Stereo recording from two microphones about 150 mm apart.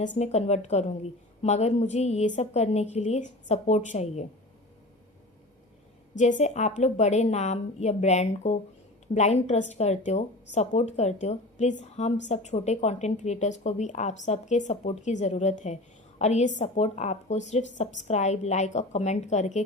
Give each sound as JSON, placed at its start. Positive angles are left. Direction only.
{"t": 0.0, "sound": "speech", "side_deg": 45}
{"t": 6.1, "sound": "speech", "side_deg": 55}